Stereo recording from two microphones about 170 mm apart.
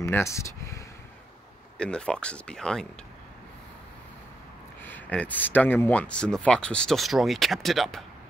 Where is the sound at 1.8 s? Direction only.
5° left (ahead or behind).